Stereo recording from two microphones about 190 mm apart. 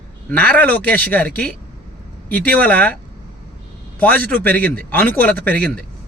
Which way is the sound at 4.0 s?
10° left (ahead or behind).